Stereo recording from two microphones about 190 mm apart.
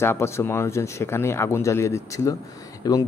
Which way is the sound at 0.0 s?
15° left (ahead or behind).